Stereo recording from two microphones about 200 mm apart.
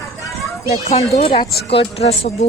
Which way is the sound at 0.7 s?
35° left (ahead or behind).